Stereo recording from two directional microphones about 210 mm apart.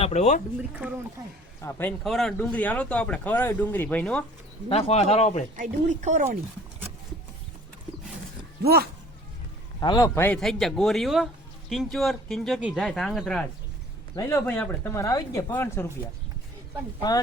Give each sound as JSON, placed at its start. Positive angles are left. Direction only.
{"t": 0.0, "sound": "speech", "side_deg": 30}
{"t": 0.8, "sound": "speech", "side_deg": -5}
{"t": 1.6, "sound": "speech", "side_deg": 10}
{"t": 4.7, "sound": "speech", "side_deg": 30}
{"t": 5.5, "sound": "speech", "side_deg": -35}
{"t": 8.6, "sound": "speech", "side_deg": -50}
{"t": 9.8, "sound": "a man's voice", "side_deg": 15}